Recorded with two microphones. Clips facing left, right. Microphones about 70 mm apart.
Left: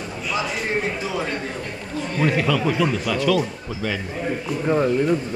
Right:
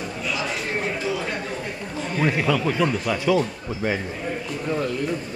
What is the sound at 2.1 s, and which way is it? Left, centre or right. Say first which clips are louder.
A man's voice: left 1 dB; centre.